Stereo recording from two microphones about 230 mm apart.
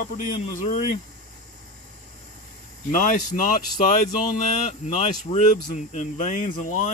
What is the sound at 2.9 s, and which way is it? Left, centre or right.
Speech, left.